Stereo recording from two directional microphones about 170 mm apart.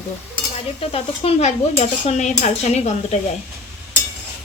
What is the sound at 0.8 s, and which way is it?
Stir, 35° left (ahead or behind).